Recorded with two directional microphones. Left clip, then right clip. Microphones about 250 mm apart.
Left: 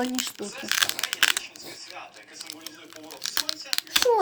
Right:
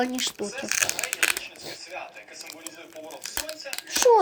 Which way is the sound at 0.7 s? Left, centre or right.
Left.